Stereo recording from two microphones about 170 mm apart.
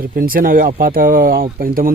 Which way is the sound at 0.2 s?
55° right (ahead or behind).